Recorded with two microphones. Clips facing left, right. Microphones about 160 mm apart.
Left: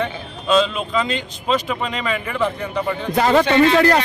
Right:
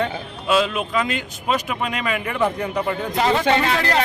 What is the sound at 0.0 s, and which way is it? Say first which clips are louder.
Speech: even; 10° right (ahead or behind).